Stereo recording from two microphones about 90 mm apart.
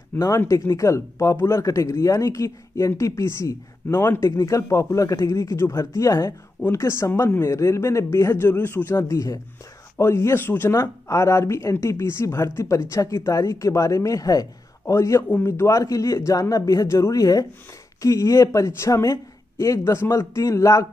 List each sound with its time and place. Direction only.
0.5 s speech: 35° left (ahead or behind)